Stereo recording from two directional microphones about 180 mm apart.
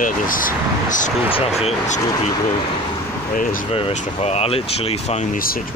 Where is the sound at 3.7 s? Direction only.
35° left (ahead or behind).